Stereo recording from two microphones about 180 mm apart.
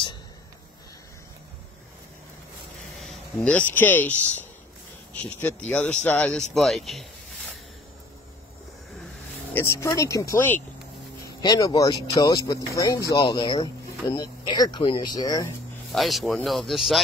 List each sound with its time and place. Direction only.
3.0 s speech: centre (ahead or behind)
9.5 s speech: 15° left (ahead or behind)
11.4 s speech: 20° left (ahead or behind)
15.9 s speech: centre (ahead or behind)